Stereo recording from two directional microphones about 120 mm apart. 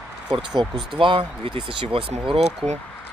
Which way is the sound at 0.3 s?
40° right (ahead or behind).